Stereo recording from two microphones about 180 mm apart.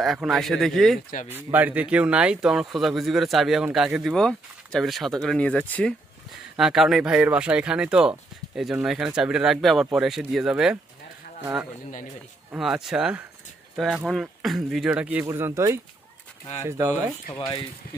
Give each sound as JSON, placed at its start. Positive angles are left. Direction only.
{"t": 0.0, "sound": "speech", "side_deg": 0}
{"t": 1.3, "sound": "speech", "side_deg": -10}
{"t": 12.4, "sound": "speech", "side_deg": -5}
{"t": 17.3, "sound": "speech", "side_deg": 30}